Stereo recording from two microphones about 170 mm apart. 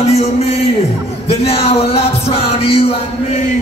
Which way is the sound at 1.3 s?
35° left (ahead or behind).